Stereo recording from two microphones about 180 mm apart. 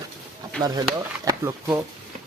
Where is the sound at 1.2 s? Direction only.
20° right (ahead or behind).